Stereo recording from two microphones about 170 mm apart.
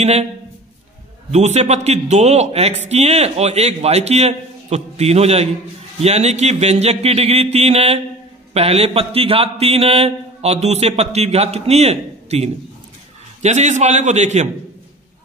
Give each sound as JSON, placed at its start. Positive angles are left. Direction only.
{"t": 1.3, "sound": "a man's voice", "side_deg": -40}